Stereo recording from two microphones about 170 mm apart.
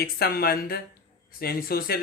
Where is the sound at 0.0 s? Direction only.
65° left (ahead or behind).